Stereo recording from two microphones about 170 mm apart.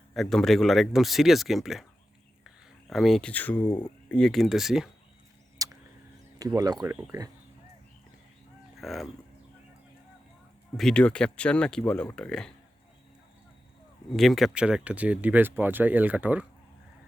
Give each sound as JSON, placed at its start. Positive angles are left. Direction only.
{"t": 0.1, "sound": "speech", "side_deg": 0}
{"t": 2.9, "sound": "speech", "side_deg": 0}
{"t": 5.6, "sound": "a sound", "side_deg": -20}
{"t": 6.4, "sound": "speech", "side_deg": -20}
{"t": 8.8, "sound": "speech", "side_deg": 0}
{"t": 10.8, "sound": "speech", "side_deg": 5}
{"t": 14.1, "sound": "speech", "side_deg": 0}